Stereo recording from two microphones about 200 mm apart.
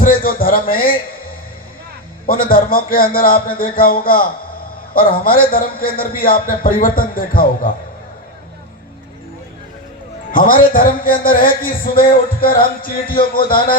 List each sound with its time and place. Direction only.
0.0 s a man's voice: 45° left (ahead or behind)
10.3 s a man's voice: 45° left (ahead or behind)